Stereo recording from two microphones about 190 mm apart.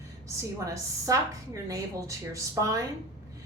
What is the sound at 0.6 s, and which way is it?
Speech, 15° right (ahead or behind).